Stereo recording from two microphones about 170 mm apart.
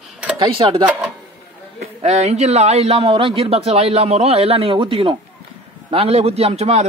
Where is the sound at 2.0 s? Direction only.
40° right (ahead or behind).